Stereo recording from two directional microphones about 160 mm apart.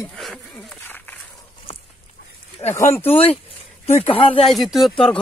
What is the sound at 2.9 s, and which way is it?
Speech, 15° left (ahead or behind).